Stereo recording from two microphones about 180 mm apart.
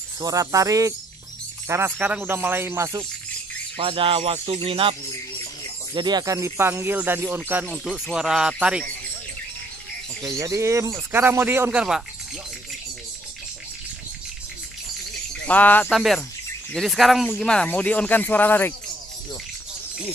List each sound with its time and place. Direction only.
0.2 s a man's voice: 20° right (ahead or behind)
3.7 s speech: 30° right (ahead or behind)
5.9 s speech: 25° right (ahead or behind); by 8.8 s 5° right (ahead or behind)
10.2 s speech: 20° right (ahead or behind)
15.4 s speech: 10° left (ahead or behind)